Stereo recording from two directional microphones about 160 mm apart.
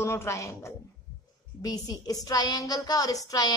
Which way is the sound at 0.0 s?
15° left (ahead or behind).